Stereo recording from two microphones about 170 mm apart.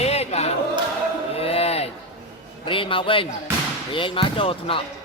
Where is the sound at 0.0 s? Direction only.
40° left (ahead or behind).